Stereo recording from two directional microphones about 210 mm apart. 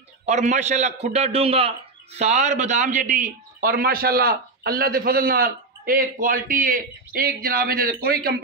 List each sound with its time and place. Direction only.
0.2 s a man's voice: 35° right (ahead or behind)